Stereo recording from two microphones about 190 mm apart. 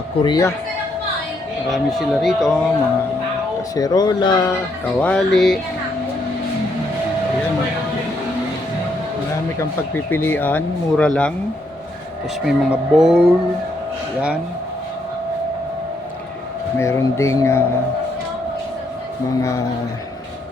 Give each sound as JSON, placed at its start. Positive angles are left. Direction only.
{"t": 0.2, "sound": "speech", "side_deg": 20}
{"t": 1.7, "sound": "speech", "side_deg": 0}
{"t": 3.8, "sound": "speech", "side_deg": 20}
{"t": 4.9, "sound": "speech", "side_deg": 5}
{"t": 9.6, "sound": "speech", "side_deg": 10}
{"t": 12.5, "sound": "speech", "side_deg": 0}
{"t": 16.7, "sound": "speech", "side_deg": 15}
{"t": 19.4, "sound": "speech", "side_deg": 15}